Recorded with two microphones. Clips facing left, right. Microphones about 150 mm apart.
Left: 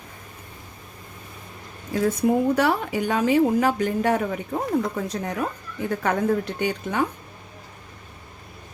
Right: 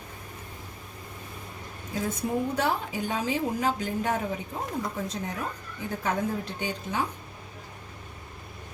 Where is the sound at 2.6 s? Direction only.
70° left (ahead or behind).